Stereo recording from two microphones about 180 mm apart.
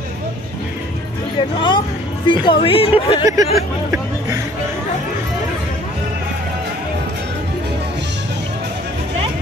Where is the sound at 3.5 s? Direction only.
15° right (ahead or behind).